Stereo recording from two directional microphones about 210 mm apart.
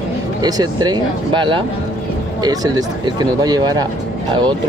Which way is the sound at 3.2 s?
20° right (ahead or behind).